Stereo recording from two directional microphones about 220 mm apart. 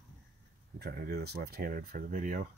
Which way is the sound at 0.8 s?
45° right (ahead or behind).